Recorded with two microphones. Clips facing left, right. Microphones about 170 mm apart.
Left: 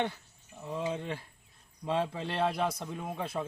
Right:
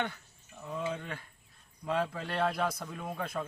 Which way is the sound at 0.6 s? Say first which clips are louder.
Left 2 dB; 25° left (ahead or behind).